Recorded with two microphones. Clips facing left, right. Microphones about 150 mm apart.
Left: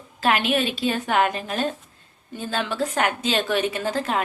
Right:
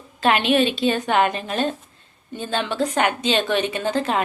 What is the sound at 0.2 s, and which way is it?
A woman's voice, 5° left (ahead or behind).